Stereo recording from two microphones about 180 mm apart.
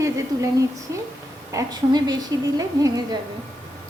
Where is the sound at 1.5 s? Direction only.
20° right (ahead or behind).